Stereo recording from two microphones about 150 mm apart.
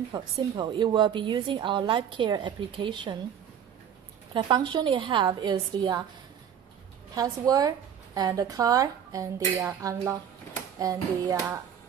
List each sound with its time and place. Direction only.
0.1 s a woman's voice: 30° right (ahead or behind)
4.3 s a woman's voice: 30° right (ahead or behind)
7.2 s a woman's voice: 25° right (ahead or behind)